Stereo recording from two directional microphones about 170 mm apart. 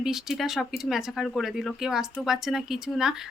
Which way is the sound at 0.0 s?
Centre (ahead or behind).